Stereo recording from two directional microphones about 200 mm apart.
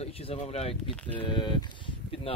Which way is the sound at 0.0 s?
30° left (ahead or behind).